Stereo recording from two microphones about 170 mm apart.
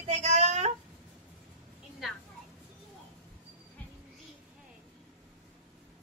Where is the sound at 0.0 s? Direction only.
40° right (ahead or behind).